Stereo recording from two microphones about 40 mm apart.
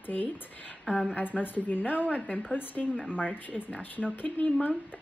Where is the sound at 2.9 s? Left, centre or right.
Right.